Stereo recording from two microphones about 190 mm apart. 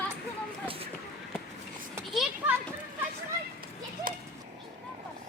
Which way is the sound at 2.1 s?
Centre (ahead or behind).